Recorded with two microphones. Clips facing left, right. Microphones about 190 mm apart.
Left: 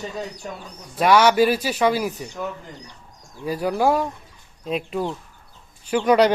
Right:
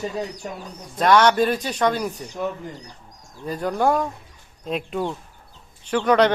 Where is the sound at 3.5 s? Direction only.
5° left (ahead or behind).